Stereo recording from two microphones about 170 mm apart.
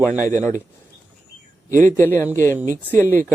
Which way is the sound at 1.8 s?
15° left (ahead or behind).